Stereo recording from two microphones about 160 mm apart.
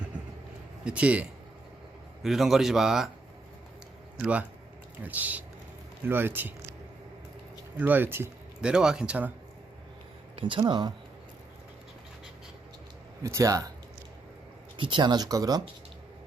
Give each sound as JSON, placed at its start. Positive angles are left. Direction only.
{"t": 0.9, "sound": "speech", "side_deg": -10}
{"t": 2.2, "sound": "a man's voice", "side_deg": 0}
{"t": 4.2, "sound": "speech", "side_deg": -10}
{"t": 7.8, "sound": "speech", "side_deg": -10}
{"t": 10.3, "sound": "speech", "side_deg": -30}
{"t": 13.2, "sound": "speech", "side_deg": -20}
{"t": 14.8, "sound": "speech", "side_deg": -30}